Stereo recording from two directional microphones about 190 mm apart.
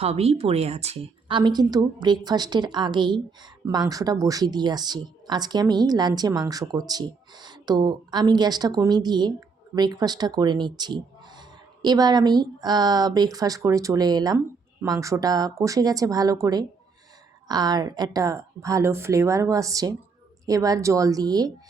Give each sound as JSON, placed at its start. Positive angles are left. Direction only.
{"t": 0.0, "sound": "a woman's voice", "side_deg": -35}